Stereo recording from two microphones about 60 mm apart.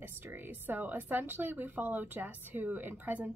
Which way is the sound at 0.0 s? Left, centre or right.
Right.